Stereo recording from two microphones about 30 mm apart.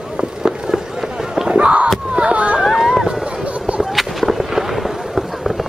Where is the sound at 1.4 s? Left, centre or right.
Right.